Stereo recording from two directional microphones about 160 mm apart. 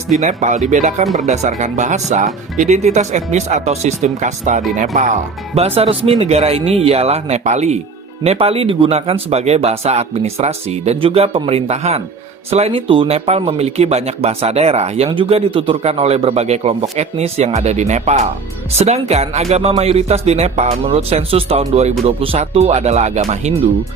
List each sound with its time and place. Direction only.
0.1 s speech: 50° right (ahead or behind)